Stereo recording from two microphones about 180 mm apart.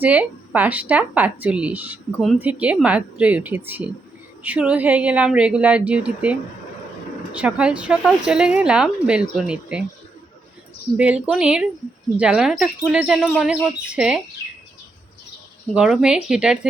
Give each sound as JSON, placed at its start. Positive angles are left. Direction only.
{"t": 0.0, "sound": "speech", "side_deg": -10}
{"t": 7.3, "sound": "a woman's voice", "side_deg": -5}
{"t": 10.9, "sound": "a woman's voice", "side_deg": -5}
{"t": 15.7, "sound": "a woman's voice", "side_deg": -5}